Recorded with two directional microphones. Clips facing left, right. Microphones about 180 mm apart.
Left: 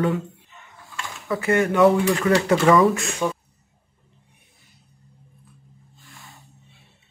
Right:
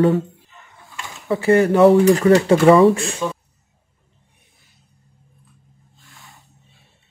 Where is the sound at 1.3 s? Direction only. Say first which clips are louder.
Right 6 dB; 30° right (ahead or behind).